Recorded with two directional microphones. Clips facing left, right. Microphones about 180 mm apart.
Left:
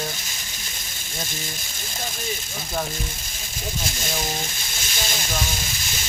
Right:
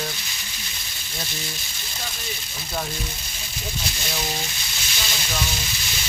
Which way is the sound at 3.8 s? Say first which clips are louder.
Left 1 dB; 50° left (ahead or behind).